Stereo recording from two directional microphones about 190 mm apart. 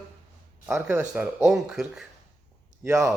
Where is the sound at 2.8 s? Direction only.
15° right (ahead or behind).